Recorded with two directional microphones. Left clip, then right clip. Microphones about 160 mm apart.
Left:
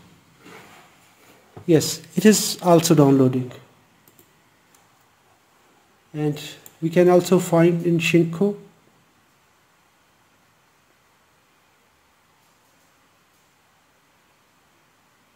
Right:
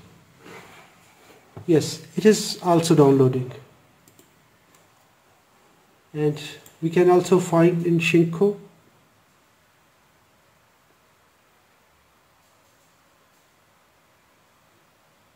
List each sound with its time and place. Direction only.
1.7 s speech: 50° left (ahead or behind)
6.1 s speech: 35° left (ahead or behind)